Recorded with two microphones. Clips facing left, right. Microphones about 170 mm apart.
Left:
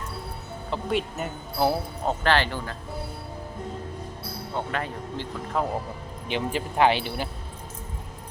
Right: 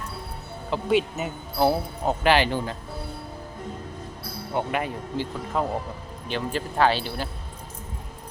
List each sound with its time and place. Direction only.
0.7 s speech: centre (ahead or behind)
2.2 s speech: 15° right (ahead or behind)
4.5 s speech: 15° right (ahead or behind)
6.2 s speech: 15° left (ahead or behind)